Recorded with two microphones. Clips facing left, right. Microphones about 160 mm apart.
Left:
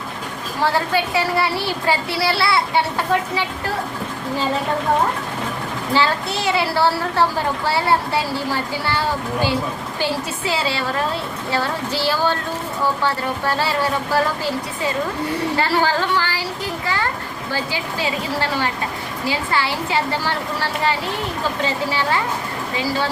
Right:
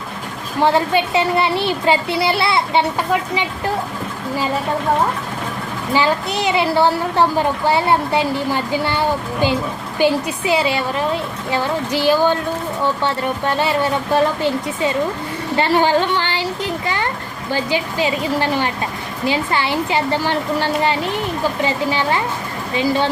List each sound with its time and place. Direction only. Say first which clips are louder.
0.6 s speech: right 4 dB; 20° right (ahead or behind)
5.9 s a woman's voice: right 2 dB; 15° right (ahead or behind)